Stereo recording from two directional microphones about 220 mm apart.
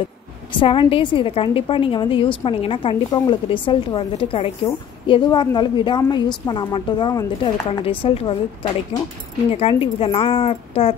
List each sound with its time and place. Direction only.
0.5 s a woman's voice: 20° left (ahead or behind)
9.5 s a woman's voice: 25° left (ahead or behind)